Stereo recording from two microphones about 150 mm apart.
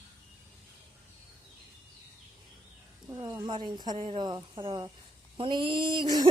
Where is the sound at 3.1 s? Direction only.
25° right (ahead or behind).